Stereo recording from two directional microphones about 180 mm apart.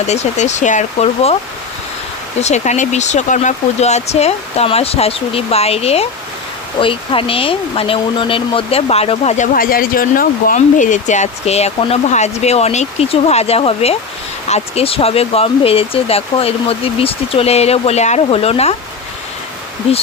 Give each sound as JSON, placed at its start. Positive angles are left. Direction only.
{"t": 0.1, "sound": "speech", "side_deg": 40}
{"t": 2.4, "sound": "speech", "side_deg": 40}